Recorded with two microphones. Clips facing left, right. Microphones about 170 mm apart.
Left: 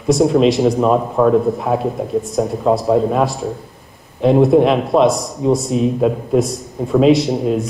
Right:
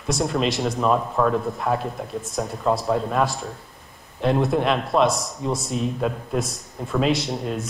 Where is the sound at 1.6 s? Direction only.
Centre (ahead or behind).